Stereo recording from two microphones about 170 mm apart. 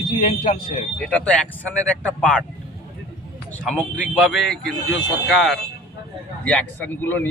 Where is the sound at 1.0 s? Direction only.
5° left (ahead or behind).